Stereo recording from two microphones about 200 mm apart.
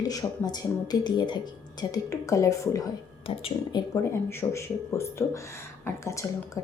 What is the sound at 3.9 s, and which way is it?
Speech, 15° left (ahead or behind).